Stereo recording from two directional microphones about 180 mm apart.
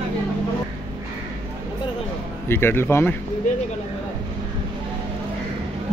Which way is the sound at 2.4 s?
10° left (ahead or behind).